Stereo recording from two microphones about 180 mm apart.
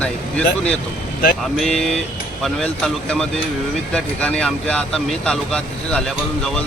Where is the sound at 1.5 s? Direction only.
Centre (ahead or behind).